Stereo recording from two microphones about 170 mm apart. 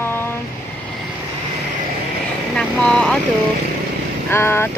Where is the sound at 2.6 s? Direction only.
5° left (ahead or behind).